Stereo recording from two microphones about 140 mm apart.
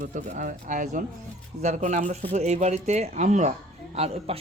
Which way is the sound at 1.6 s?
55° right (ahead or behind).